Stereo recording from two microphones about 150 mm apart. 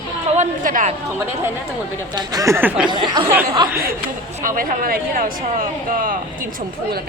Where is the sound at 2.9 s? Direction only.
30° right (ahead or behind).